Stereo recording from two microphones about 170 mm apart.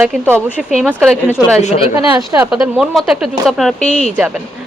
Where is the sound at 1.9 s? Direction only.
20° right (ahead or behind).